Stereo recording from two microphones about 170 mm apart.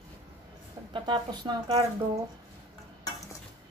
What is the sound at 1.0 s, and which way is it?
Speech, 25° right (ahead or behind).